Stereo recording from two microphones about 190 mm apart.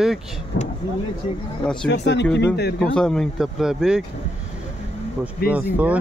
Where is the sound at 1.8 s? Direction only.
65° left (ahead or behind).